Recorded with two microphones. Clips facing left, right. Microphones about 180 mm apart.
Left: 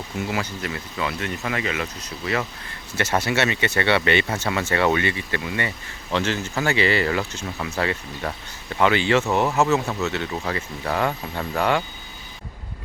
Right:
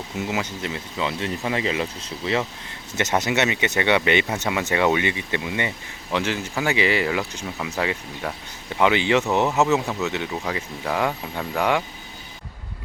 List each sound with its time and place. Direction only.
0.2 s speech: 20° right (ahead or behind)